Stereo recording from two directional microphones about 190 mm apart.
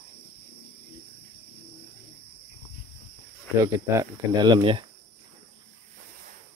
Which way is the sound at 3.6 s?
15° right (ahead or behind).